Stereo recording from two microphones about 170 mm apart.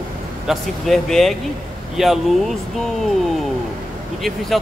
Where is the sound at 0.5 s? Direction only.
Centre (ahead or behind).